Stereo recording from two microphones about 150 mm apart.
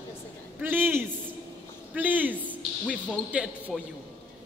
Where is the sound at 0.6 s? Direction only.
15° right (ahead or behind).